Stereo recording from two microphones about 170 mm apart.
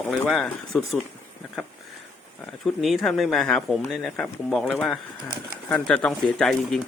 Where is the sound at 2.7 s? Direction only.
Centre (ahead or behind).